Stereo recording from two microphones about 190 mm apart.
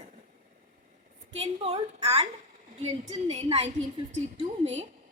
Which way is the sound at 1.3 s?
30° right (ahead or behind).